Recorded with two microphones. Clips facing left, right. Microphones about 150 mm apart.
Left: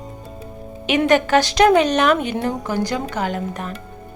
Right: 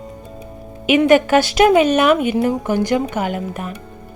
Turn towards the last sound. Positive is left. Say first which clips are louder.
# right 1 dB
turn(degrees=-10)  # may be behind; listen again after turning